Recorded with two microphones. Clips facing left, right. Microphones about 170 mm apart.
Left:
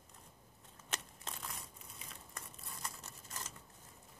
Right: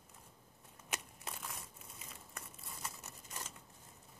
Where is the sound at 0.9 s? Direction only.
10° right (ahead or behind).